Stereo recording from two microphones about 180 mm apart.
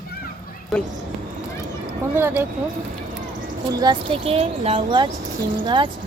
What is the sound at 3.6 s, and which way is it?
Speech, 20° right (ahead or behind).